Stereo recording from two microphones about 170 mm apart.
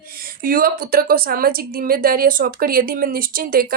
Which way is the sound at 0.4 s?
55° right (ahead or behind).